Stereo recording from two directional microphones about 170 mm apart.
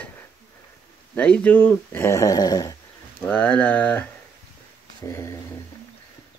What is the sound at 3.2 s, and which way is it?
Speech, 10° left (ahead or behind).